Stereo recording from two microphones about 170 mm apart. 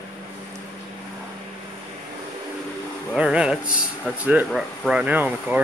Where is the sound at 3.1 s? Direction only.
5° right (ahead or behind).